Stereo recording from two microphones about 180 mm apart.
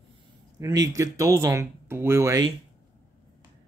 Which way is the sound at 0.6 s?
20° right (ahead or behind).